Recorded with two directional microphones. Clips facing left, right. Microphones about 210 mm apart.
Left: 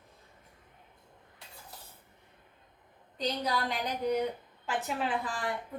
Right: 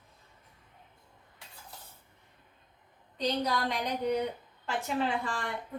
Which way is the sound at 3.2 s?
Centre (ahead or behind).